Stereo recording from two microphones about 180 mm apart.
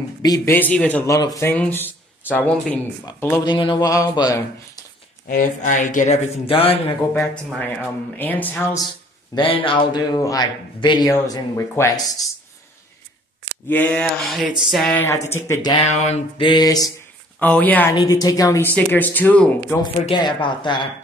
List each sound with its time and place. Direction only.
0.2 s speech: 20° left (ahead or behind)
0.6 s speech: 10° left (ahead or behind)
3.4 s speech: 25° left (ahead or behind)
5.3 s speech: 45° left (ahead or behind)
7.4 s speech: 5° left (ahead or behind)
9.3 s speech: 30° left (ahead or behind)
13.7 s a sound: 10° left (ahead or behind)
15.0 s speech: 15° left (ahead or behind)
15.7 s speech: 40° left (ahead or behind)
16.3 s speech: 25° left (ahead or behind)
17.4 s speech: 10° left (ahead or behind)
17.9 s speech: 20° left (ahead or behind)
19.8 s speech: 25° left (ahead or behind)